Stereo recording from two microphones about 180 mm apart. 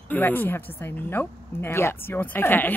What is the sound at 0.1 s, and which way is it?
Speech, 10° left (ahead or behind).